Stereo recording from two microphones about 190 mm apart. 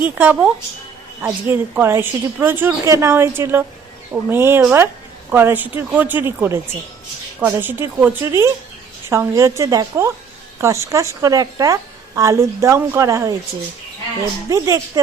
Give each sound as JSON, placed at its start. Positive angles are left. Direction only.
{"t": 0.0, "sound": "a woman's voice", "side_deg": -10}
{"t": 14.5, "sound": "a woman's voice", "side_deg": -15}